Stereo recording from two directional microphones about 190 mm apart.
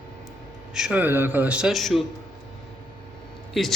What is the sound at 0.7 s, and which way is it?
A man's voice, 5° right (ahead or behind).